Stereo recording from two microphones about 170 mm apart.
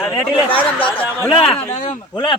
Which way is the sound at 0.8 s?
10° left (ahead or behind).